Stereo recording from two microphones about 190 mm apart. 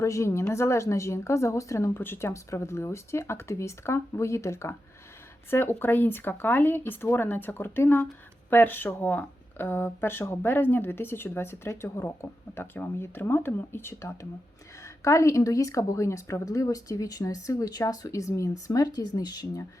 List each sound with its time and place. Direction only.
0.0 s speech: 15° left (ahead or behind)